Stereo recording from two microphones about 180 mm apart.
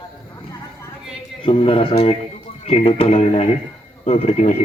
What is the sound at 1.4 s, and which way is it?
Speech, 30° left (ahead or behind).